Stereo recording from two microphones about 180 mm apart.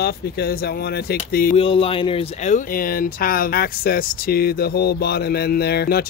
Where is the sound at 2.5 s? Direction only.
50° left (ahead or behind).